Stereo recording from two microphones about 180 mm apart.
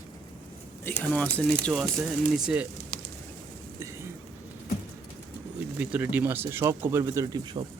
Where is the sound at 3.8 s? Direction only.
15° right (ahead or behind).